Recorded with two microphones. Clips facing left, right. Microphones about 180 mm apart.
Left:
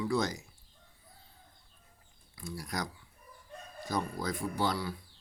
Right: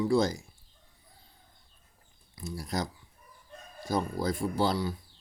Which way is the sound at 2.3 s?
25° right (ahead or behind).